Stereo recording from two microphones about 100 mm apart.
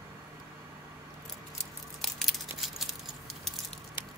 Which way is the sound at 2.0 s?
5° left (ahead or behind).